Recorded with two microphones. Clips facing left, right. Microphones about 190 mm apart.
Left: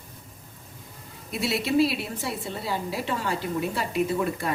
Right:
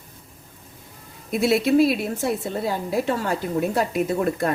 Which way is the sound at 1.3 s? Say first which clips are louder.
Right 7 dB; 50° right (ahead or behind).